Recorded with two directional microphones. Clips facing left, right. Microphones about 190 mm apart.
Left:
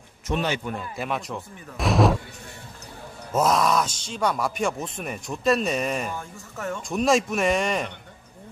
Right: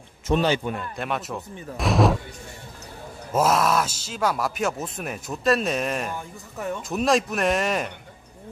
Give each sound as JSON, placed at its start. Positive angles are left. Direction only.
{"t": 0.3, "sound": "a man's voice", "side_deg": -35}
{"t": 0.7, "sound": "speech", "side_deg": 0}
{"t": 3.3, "sound": "speech", "side_deg": -5}